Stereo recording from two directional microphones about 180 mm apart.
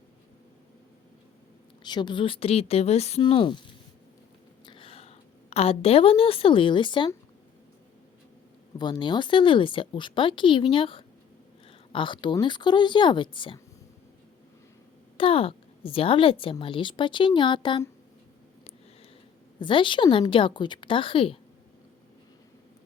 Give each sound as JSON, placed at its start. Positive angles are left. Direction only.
{"t": 1.8, "sound": "a woman's voice", "side_deg": 25}
{"t": 4.6, "sound": "a woman's voice", "side_deg": 30}
{"t": 8.8, "sound": "a woman's voice", "side_deg": 25}
{"t": 15.2, "sound": "a woman's voice", "side_deg": 30}
{"t": 19.5, "sound": "a woman's voice", "side_deg": 25}